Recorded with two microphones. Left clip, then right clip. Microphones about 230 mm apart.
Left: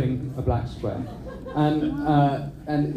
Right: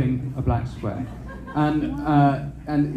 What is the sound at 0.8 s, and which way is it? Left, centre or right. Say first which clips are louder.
A man's voice: left 1 dB; right.